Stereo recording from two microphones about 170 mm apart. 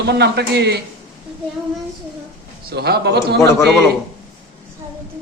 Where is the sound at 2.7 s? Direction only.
70° right (ahead or behind).